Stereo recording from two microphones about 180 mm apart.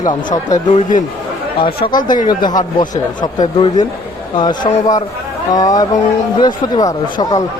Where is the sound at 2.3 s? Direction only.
25° left (ahead or behind).